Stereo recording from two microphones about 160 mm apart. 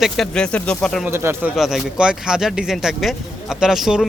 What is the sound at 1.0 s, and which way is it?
Speech, 15° right (ahead or behind).